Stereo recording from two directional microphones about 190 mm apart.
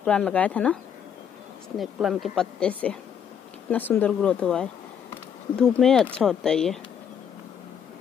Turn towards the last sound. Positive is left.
turn(degrees=5)  # may be behind; listen again after turning